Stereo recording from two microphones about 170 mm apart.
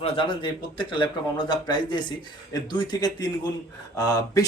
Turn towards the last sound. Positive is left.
turn(degrees=20)  # may be behind; listen again after turning